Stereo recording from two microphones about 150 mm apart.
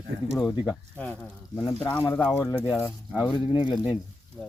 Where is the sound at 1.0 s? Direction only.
5° left (ahead or behind).